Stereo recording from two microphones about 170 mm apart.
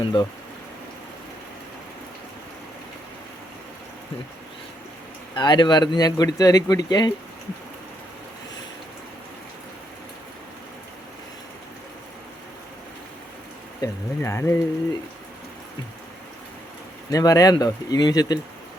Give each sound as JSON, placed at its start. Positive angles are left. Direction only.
{"t": 0.0, "sound": "a man's voice", "side_deg": 25}
{"t": 5.3, "sound": "a man's voice", "side_deg": 25}
{"t": 13.8, "sound": "speech", "side_deg": 15}
{"t": 17.1, "sound": "a man's voice", "side_deg": 20}